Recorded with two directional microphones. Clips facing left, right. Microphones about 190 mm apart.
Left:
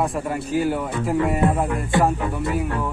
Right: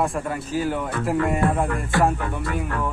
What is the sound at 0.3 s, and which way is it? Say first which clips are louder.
Speech: left 3 dB; 10° left (ahead or behind).